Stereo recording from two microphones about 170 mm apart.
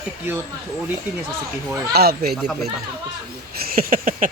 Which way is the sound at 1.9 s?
65° right (ahead or behind).